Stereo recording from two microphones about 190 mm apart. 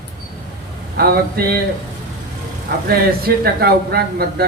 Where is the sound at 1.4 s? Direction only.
55° right (ahead or behind).